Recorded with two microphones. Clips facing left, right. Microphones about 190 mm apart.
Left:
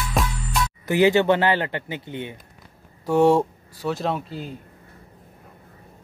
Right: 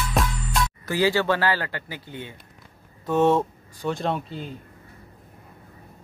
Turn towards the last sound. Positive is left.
turn(degrees=0)  # may be behind; listen again after turning